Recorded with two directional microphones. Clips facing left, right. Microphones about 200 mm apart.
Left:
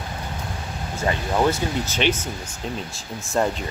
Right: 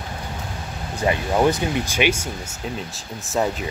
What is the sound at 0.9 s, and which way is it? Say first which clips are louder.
Speech: right 2 dB; 15° right (ahead or behind).